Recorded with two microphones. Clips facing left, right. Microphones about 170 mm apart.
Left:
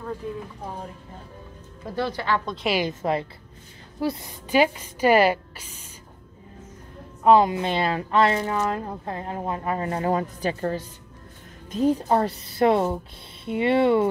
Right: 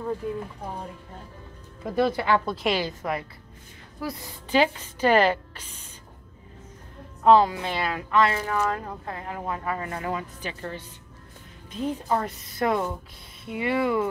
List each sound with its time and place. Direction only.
2.0 s speech: 5° right (ahead or behind)
3.0 s a woman's voice: 30° left (ahead or behind)
4.5 s a woman's voice: 10° left (ahead or behind)
7.2 s a woman's voice: 20° left (ahead or behind)